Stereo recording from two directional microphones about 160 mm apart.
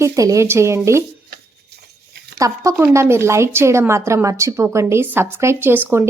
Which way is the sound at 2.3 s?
20° right (ahead or behind).